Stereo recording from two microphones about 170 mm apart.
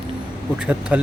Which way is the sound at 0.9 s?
10° right (ahead or behind).